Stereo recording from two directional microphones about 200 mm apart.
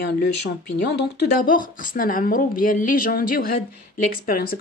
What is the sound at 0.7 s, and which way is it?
Speech, 55° left (ahead or behind).